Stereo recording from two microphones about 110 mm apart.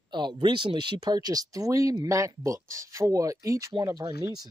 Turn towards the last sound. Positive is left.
turn(degrees=-35)  # may be behind; listen again after turning